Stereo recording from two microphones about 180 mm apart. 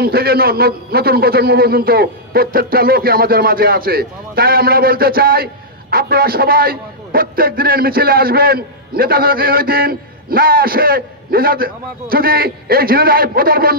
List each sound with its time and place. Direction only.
0.0 s a man's voice: 60° right (ahead or behind)